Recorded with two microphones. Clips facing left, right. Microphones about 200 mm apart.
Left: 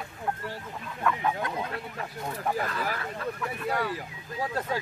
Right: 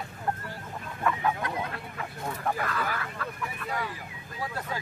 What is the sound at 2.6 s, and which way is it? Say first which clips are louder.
Speech: left 1 dB; 25° left (ahead or behind).